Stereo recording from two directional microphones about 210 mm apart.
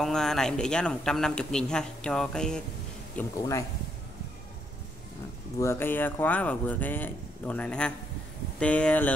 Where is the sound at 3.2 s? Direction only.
15° left (ahead or behind).